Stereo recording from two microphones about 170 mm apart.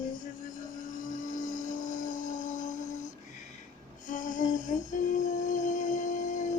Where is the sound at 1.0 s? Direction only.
50° left (ahead or behind).